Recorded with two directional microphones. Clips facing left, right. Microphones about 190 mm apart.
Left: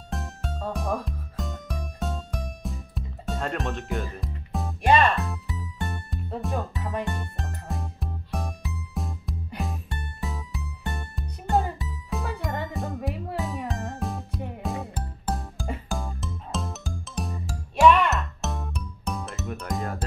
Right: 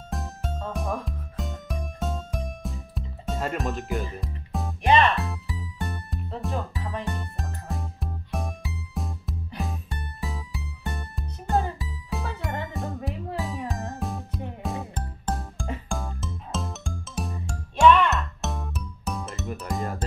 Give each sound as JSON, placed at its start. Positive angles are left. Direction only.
{"t": 0.1, "sound": "music", "side_deg": 0}